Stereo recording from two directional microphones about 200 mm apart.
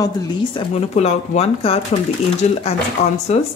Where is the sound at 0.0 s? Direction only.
25° left (ahead or behind).